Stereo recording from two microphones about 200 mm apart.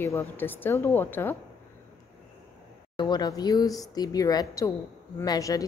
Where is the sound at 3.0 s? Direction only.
20° left (ahead or behind).